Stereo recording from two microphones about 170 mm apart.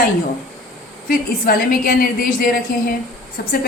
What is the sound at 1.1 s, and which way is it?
A woman's voice, 55° left (ahead or behind).